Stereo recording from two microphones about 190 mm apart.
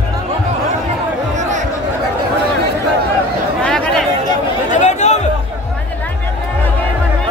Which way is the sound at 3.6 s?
5° left (ahead or behind).